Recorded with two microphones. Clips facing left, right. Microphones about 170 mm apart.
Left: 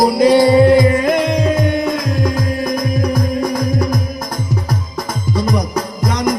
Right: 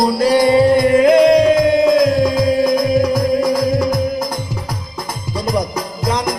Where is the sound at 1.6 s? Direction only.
90° right.